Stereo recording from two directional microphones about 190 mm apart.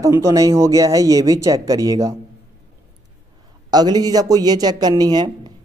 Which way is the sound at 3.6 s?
20° right (ahead or behind).